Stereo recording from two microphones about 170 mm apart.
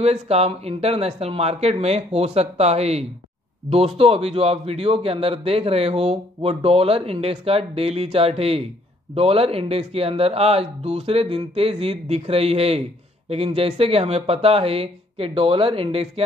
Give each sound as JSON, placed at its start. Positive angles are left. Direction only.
{"t": 0.0, "sound": "a man's voice", "side_deg": -40}